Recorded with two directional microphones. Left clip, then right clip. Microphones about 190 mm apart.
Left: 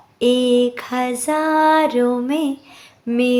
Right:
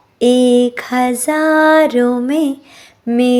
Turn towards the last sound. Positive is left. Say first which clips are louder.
# right 4 dB
turn(degrees=-25)  # may be behind; listen again after turning